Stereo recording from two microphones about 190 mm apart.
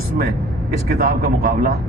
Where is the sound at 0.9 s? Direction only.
55° right (ahead or behind).